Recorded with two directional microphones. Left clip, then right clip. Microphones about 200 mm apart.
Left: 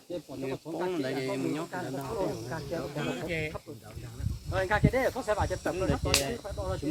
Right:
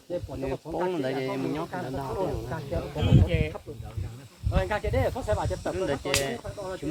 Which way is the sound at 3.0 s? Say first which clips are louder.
Right 5 dB; 35° right (ahead or behind).